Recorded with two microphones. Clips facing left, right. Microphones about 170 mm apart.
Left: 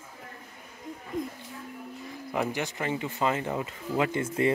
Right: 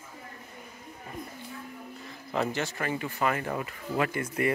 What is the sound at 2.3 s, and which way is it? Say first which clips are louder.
Speech: even; 15° left (ahead or behind).